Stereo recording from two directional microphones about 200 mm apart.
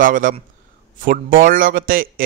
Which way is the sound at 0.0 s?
45° right (ahead or behind).